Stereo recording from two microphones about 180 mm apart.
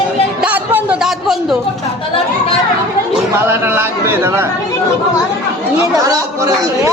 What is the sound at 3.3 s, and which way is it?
Speech, 15° right (ahead or behind).